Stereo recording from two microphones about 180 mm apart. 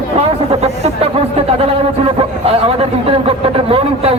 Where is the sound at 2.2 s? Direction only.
35° right (ahead or behind).